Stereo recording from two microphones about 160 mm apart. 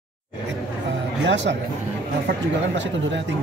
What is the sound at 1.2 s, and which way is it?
Speech, 90° right.